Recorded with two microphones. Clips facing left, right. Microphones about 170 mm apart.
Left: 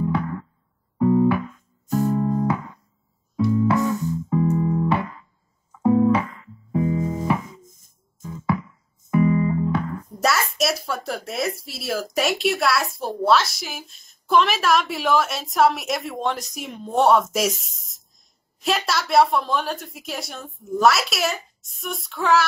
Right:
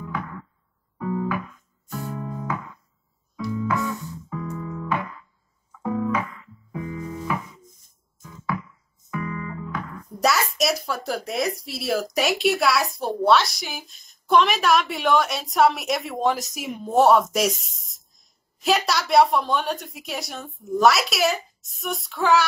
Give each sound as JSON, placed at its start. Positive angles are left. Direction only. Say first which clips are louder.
{"t": 0.9, "sound": "music", "louder": "left 9 dB", "side_deg": 30}
{"t": 3.5, "sound": "music", "louder": "left 4 dB", "side_deg": 35}
{"t": 5.7, "sound": "music", "louder": "left 8 dB", "side_deg": 30}
{"t": 8.2, "sound": "music", "louder": "left 5 dB", "side_deg": 25}
{"t": 10.2, "sound": "speech", "louder": "even", "side_deg": 0}